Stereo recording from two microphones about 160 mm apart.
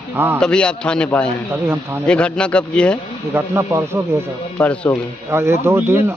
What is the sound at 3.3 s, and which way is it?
Speech, 15° right (ahead or behind).